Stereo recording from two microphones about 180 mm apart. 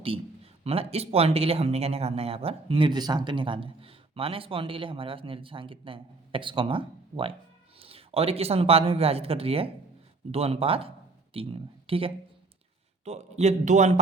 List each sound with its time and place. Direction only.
0.6 s speech: 35° right (ahead or behind)